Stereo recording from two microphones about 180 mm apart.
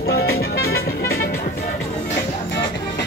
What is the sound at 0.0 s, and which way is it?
Music, 60° left (ahead or behind).